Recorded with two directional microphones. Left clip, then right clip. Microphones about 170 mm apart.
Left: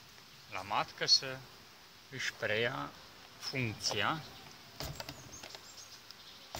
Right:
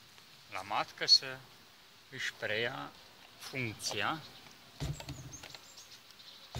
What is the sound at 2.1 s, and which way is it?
Speech, 25° right (ahead or behind).